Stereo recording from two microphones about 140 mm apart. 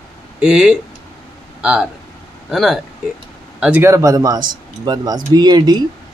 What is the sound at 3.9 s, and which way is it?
Speech, 20° right (ahead or behind).